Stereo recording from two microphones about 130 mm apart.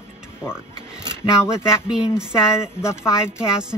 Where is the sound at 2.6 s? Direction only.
20° left (ahead or behind).